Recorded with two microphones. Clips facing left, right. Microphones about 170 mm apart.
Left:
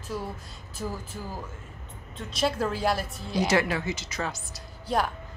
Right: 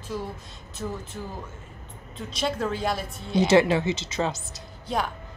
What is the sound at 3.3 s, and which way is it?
Speech, 25° right (ahead or behind).